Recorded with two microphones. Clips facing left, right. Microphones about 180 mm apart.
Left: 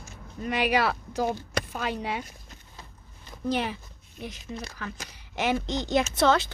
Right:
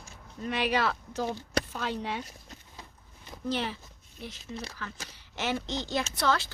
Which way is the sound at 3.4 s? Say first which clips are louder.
Left 4 dB; 15° left (ahead or behind).